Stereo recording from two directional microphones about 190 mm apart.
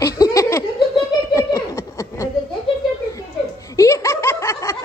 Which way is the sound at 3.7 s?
15° left (ahead or behind).